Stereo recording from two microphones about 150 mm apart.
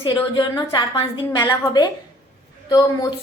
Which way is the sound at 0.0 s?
30° left (ahead or behind).